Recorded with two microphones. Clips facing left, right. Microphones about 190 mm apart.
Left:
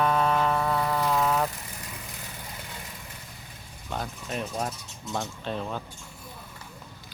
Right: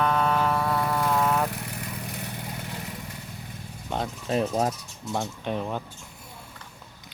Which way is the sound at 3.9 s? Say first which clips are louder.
Right 6 dB; 30° right (ahead or behind).